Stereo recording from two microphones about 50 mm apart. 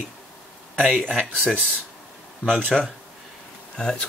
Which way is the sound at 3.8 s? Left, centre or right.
Centre.